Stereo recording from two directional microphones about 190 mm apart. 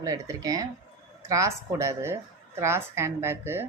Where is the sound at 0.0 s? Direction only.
20° right (ahead or behind).